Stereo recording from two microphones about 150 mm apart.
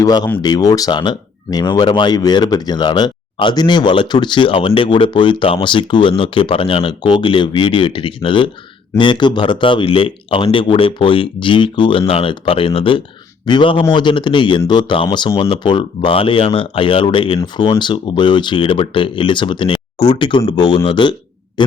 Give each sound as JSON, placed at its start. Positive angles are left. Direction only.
{"t": 0.0, "sound": "speech", "side_deg": 25}